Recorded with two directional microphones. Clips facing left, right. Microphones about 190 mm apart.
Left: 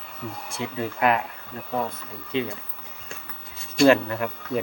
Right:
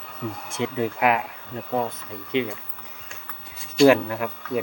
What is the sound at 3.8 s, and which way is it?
Speech, 5° right (ahead or behind).